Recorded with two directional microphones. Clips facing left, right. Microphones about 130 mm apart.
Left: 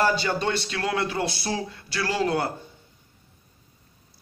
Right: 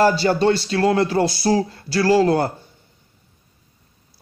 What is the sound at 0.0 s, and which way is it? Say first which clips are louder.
A man's voice: right 7 dB; 35° right (ahead or behind).